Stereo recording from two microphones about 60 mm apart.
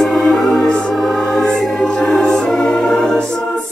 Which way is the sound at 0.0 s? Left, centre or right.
Centre.